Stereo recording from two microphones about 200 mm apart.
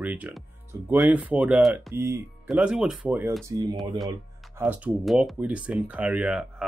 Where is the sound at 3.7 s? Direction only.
Centre (ahead or behind).